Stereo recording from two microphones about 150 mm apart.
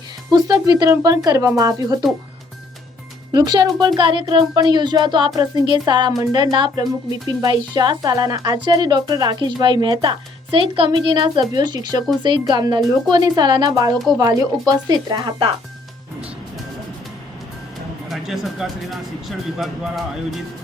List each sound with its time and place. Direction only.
0.3 s speech: 25° right (ahead or behind)
3.3 s speech: 25° right (ahead or behind)
18.1 s speech: centre (ahead or behind)